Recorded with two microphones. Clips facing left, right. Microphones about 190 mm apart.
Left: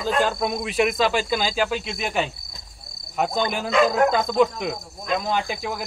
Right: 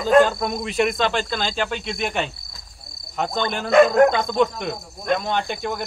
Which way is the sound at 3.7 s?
55° right (ahead or behind).